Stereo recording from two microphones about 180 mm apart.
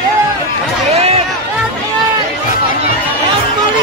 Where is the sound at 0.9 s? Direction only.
35° right (ahead or behind).